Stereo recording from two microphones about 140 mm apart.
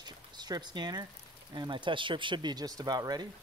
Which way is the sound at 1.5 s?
35° right (ahead or behind).